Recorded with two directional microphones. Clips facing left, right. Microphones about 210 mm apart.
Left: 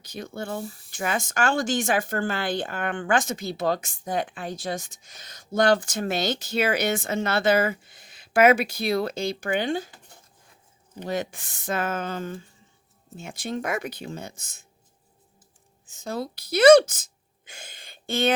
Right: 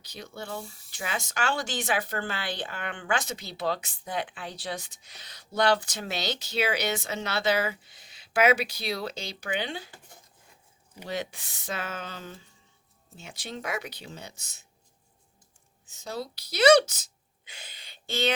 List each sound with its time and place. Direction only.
0.0 s speech: 50° left (ahead or behind)
11.0 s speech: 50° left (ahead or behind)
15.9 s speech: 50° left (ahead or behind)